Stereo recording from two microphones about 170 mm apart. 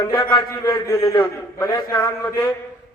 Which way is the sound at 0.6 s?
15° left (ahead or behind).